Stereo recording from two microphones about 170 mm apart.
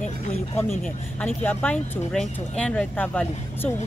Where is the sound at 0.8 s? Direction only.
10° left (ahead or behind).